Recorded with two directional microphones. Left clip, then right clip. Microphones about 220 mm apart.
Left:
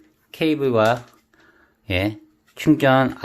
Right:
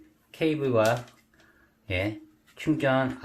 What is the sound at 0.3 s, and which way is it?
Speech, 45° left (ahead or behind).